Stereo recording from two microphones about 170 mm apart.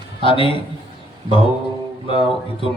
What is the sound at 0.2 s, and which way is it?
Speech, 30° left (ahead or behind).